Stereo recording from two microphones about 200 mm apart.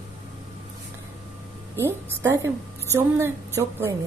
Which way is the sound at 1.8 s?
10° right (ahead or behind).